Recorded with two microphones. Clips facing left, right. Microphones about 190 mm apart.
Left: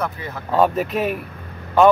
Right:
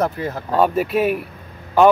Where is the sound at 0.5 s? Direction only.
5° right (ahead or behind).